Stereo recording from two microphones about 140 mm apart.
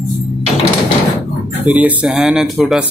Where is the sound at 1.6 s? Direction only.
10° right (ahead or behind).